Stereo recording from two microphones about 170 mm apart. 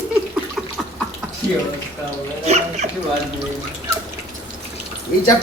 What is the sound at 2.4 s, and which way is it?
Dog, 40° right (ahead or behind).